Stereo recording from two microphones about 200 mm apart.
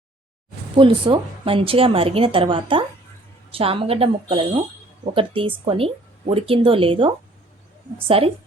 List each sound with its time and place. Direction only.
0.8 s a woman's voice: 25° right (ahead or behind)